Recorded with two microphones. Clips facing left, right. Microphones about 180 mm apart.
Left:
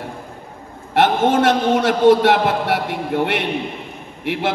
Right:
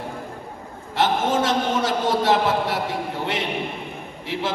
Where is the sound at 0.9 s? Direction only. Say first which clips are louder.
Left 6 dB; 65° left (ahead or behind).